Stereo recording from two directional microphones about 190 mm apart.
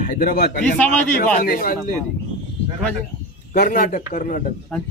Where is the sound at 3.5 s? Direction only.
50° left (ahead or behind).